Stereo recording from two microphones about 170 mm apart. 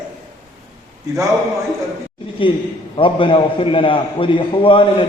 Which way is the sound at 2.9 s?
30° left (ahead or behind).